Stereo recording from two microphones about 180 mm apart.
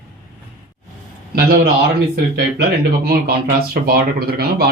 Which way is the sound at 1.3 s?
60° right (ahead or behind).